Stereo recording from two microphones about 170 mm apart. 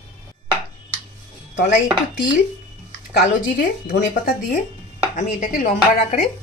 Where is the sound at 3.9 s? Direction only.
50° left (ahead or behind).